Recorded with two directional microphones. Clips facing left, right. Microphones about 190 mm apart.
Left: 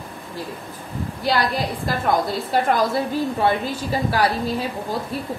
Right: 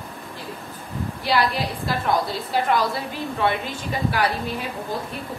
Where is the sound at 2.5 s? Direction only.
45° left (ahead or behind).